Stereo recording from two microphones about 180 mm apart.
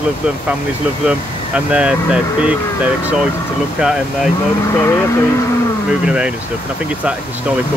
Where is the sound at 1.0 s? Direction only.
5° right (ahead or behind).